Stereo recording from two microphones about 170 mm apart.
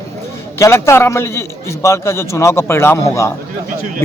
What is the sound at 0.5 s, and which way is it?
A man's voice, 15° left (ahead or behind).